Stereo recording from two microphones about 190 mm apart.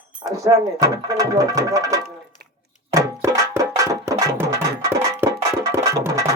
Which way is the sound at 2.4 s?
55° right (ahead or behind).